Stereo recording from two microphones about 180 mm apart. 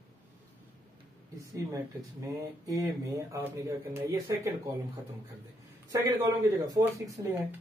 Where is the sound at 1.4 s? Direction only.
15° right (ahead or behind).